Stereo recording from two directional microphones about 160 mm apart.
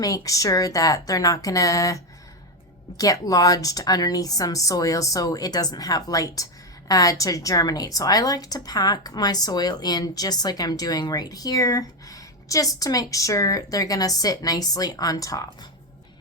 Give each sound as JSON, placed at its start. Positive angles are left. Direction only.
{"t": 0.0, "sound": "speech", "side_deg": 20}
{"t": 3.0, "sound": "speech", "side_deg": 20}